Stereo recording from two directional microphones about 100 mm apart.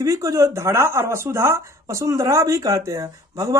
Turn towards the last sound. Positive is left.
turn(degrees=-35)  # may be behind; listen again after turning